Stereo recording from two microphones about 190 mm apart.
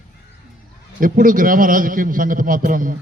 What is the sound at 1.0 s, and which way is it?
A man's voice, 45° right (ahead or behind).